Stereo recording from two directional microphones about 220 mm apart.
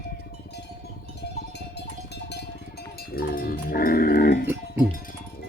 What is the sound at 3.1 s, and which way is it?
Livestock, 40° left (ahead or behind).